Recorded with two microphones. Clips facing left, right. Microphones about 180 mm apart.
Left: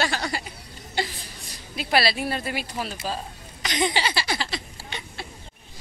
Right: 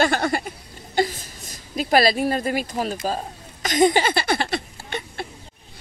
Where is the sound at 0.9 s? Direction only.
45° right (ahead or behind).